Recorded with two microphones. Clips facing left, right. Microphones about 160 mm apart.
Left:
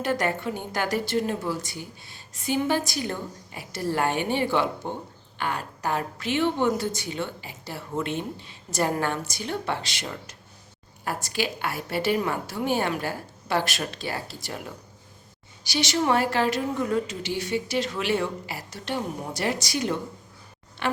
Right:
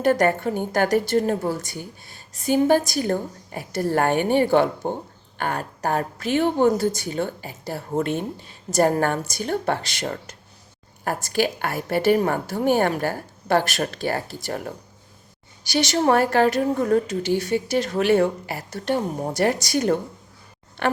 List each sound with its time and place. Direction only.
0.0 s a woman's voice: 45° right (ahead or behind)